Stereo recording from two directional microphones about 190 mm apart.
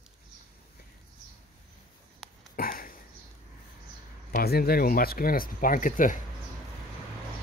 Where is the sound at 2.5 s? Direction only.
50° left (ahead or behind).